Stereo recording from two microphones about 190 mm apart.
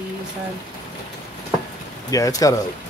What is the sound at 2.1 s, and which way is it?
Speech, 20° left (ahead or behind).